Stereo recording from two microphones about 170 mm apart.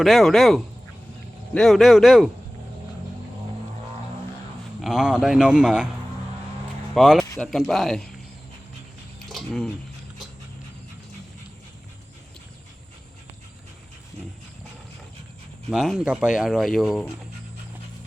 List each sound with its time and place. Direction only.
0.0 s speech: centre (ahead or behind)
4.8 s speech: centre (ahead or behind)
6.9 s speech: centre (ahead or behind)
9.1 s a sound: centre (ahead or behind)
15.7 s speech: centre (ahead or behind)